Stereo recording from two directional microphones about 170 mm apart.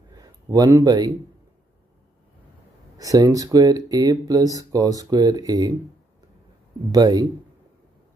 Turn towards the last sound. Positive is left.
turn(degrees=-20)  # may be behind; listen again after turning